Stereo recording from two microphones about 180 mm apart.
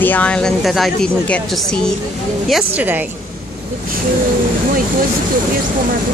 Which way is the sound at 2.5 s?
10° right (ahead or behind).